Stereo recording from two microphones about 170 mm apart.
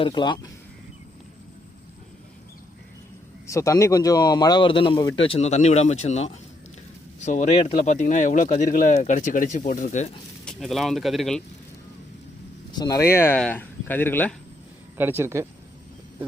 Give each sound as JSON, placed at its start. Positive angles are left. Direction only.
{"t": 0.0, "sound": "speech", "side_deg": 25}
{"t": 3.4, "sound": "speech", "side_deg": 15}
{"t": 10.4, "sound": "speech", "side_deg": 0}
{"t": 12.7, "sound": "speech", "side_deg": 20}
{"t": 14.9, "sound": "speech", "side_deg": -15}